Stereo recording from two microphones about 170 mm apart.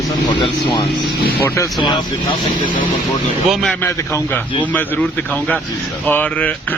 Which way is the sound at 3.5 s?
5° left (ahead or behind).